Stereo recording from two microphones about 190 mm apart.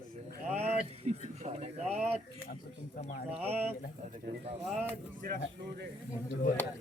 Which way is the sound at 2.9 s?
45° left (ahead or behind).